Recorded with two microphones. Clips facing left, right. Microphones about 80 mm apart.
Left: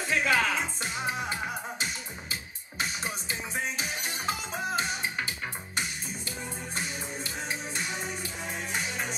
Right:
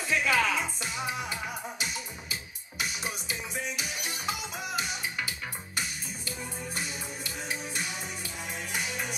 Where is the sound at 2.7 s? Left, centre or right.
Left.